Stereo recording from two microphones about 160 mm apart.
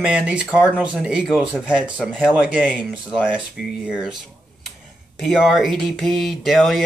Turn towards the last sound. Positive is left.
turn(degrees=0)  # may be behind; listen again after turning